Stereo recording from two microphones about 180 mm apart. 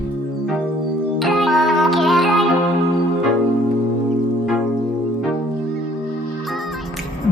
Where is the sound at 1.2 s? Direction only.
Centre (ahead or behind).